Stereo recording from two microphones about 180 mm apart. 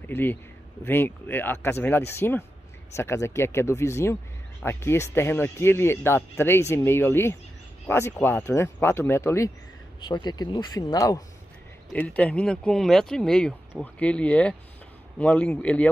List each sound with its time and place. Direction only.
0.1 s speech: 10° left (ahead or behind)
9.9 s a man's voice: 25° left (ahead or behind)
11.9 s speech: 10° left (ahead or behind)